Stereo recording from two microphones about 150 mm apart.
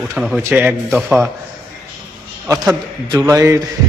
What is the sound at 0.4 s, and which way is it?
Speech, 15° right (ahead or behind).